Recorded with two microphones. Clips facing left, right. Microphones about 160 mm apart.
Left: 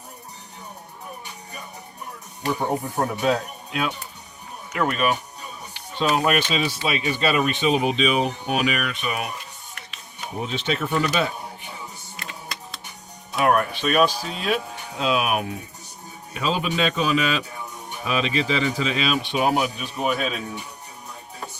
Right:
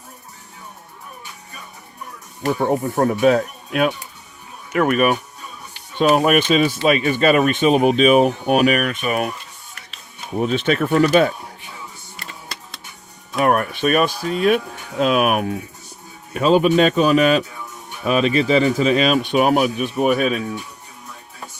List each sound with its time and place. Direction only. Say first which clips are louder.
2.4 s speech: right 5 dB; 60° right (ahead or behind)
6.1 s speech: right 6 dB; 55° right (ahead or behind)
10.4 s speech: right 8 dB; 55° right (ahead or behind)
12.2 s music: even; 35° right (ahead or behind)
13.3 s speech: right 2 dB; 50° right (ahead or behind)